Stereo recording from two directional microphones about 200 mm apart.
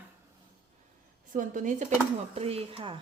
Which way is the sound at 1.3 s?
40° right (ahead or behind).